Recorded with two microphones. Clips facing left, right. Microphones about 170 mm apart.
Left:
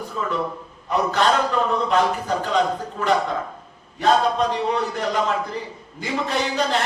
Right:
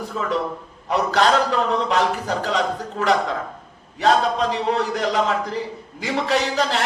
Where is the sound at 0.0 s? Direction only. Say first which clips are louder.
Right 2 dB; 90° right.